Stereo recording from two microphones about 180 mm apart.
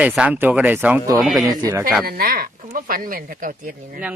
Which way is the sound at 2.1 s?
55° right (ahead or behind).